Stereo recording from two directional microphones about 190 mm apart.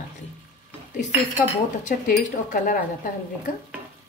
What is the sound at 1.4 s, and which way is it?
Speech, 45° left (ahead or behind).